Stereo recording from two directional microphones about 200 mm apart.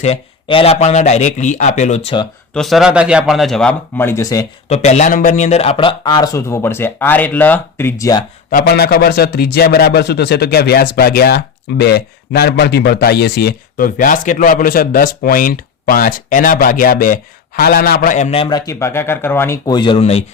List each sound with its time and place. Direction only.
0.0 s speech: 30° left (ahead or behind)
2.5 s speech: centre (ahead or behind)
4.7 s speech: 35° left (ahead or behind); by 8.2 s 15° left (ahead or behind)
8.4 s a man's voice: 50° left (ahead or behind)
18.4 s speech: 20° left (ahead or behind)